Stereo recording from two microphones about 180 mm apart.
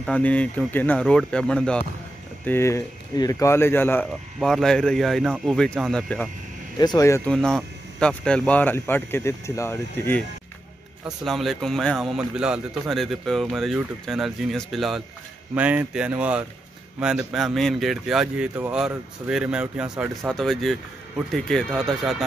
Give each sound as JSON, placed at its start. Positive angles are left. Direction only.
{"t": 0.0, "sound": "a man's voice", "side_deg": 10}
{"t": 6.8, "sound": "speech", "side_deg": 20}
{"t": 7.2, "sound": "speech", "side_deg": 5}
{"t": 11.2, "sound": "a man's voice", "side_deg": 0}